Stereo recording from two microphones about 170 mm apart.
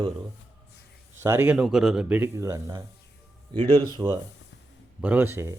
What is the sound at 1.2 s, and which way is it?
Speech, 15° right (ahead or behind).